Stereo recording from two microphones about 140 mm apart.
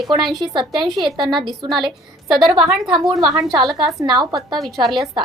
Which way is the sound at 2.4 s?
Centre (ahead or behind).